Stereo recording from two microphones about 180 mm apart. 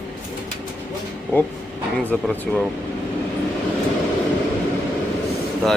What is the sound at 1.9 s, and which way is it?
Speech, 5° left (ahead or behind).